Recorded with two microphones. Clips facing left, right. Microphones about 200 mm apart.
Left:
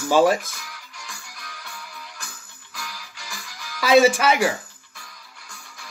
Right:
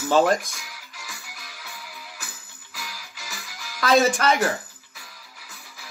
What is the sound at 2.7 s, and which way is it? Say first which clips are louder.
Music: left 1 dB; centre (ahead or behind).